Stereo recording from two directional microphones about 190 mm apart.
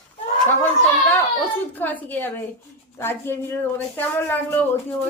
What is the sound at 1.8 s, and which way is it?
A woman's voice, 10° left (ahead or behind).